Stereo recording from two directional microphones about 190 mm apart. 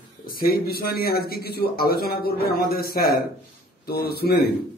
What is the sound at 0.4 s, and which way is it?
Speech, 55° left (ahead or behind).